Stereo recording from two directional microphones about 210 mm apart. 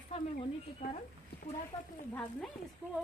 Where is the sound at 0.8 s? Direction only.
30° left (ahead or behind).